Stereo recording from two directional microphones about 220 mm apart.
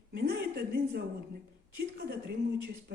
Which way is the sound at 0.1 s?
45° right (ahead or behind).